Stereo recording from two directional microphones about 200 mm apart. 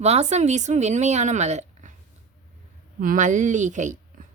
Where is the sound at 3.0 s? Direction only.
40° right (ahead or behind).